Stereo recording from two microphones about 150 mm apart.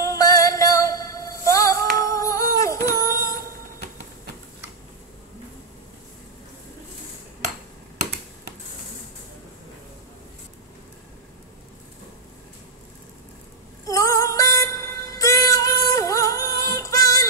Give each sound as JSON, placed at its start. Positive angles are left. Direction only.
{"t": 0.0, "sound": "music", "side_deg": 20}
{"t": 2.0, "sound": "humming", "side_deg": 20}
{"t": 13.8, "sound": "music", "side_deg": 20}